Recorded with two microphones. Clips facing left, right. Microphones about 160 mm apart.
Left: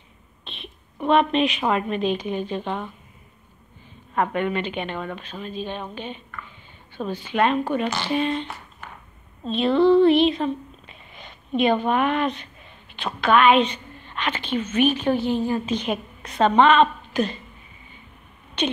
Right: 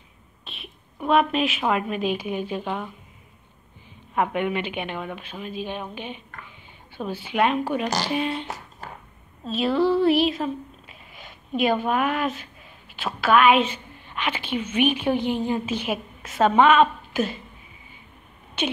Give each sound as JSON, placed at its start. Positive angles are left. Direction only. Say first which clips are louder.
{"t": 0.5, "sound": "a sound", "louder": "left 2 dB", "side_deg": -5}
{"t": 1.0, "sound": "a woman's voice", "louder": "left 2 dB", "side_deg": -5}
{"t": 4.1, "sound": "a woman's voice", "louder": "left 1 dB", "side_deg": -10}
{"t": 8.8, "sound": "a sound", "louder": "right 3 dB", "side_deg": -35}
{"t": 9.4, "sound": "a woman's voice", "louder": "left 3 dB", "side_deg": -5}
{"t": 18.6, "sound": "speech", "louder": "left 2 dB", "side_deg": -10}